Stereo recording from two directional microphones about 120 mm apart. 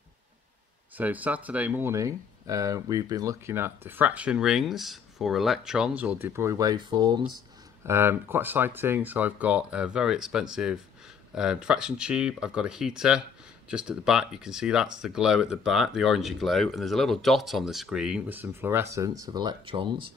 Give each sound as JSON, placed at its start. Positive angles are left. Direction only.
{"t": 0.9, "sound": "speech", "side_deg": -15}
{"t": 7.8, "sound": "speech", "side_deg": -20}
{"t": 18.3, "sound": "speech", "side_deg": -20}